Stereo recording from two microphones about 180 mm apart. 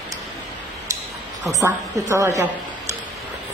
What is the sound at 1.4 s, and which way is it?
A woman's voice, 15° right (ahead or behind).